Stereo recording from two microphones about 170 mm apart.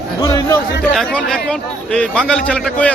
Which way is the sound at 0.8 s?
Centre (ahead or behind).